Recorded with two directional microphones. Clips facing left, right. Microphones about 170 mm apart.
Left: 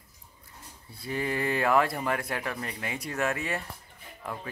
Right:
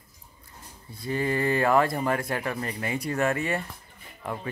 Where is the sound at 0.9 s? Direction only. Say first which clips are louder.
Right 4 dB; 5° left (ahead or behind).